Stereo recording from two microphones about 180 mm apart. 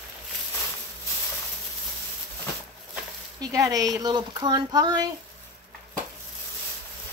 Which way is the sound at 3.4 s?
20° right (ahead or behind).